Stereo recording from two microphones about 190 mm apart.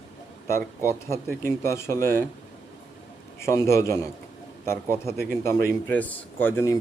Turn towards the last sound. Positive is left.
turn(degrees=15)  # may be behind; listen again after turning